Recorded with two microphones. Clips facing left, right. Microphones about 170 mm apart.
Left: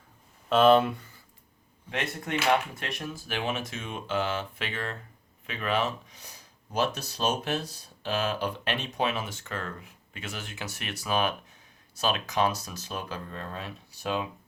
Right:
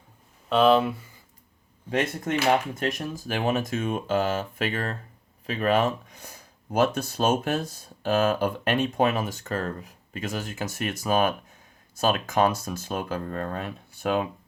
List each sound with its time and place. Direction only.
0.4 s speech: centre (ahead or behind)
1.9 s speech: 40° right (ahead or behind)